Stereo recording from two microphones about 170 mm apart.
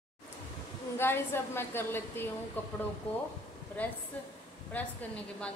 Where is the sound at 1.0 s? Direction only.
15° left (ahead or behind).